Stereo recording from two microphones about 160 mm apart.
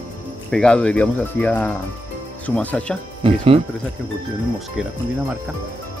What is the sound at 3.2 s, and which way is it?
Speech, 35° right (ahead or behind).